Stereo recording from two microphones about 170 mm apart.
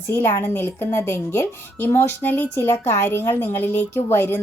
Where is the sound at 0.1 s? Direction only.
15° left (ahead or behind).